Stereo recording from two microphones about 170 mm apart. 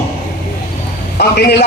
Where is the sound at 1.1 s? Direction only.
70° left (ahead or behind).